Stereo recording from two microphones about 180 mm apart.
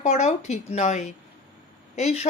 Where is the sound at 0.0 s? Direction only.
40° left (ahead or behind).